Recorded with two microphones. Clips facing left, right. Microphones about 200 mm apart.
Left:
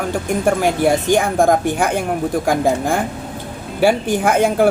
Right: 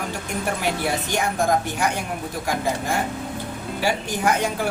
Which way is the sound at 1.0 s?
50° left (ahead or behind).